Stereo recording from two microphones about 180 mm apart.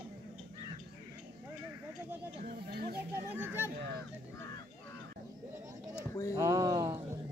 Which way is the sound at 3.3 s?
10° right (ahead or behind).